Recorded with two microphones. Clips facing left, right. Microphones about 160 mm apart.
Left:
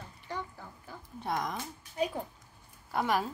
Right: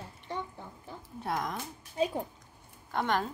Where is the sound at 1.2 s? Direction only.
Centre (ahead or behind).